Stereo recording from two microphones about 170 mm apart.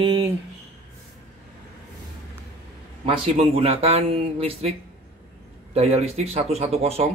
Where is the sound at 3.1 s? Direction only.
35° right (ahead or behind).